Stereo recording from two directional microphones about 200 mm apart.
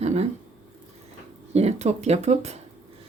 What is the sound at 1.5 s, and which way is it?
Speech, 30° right (ahead or behind).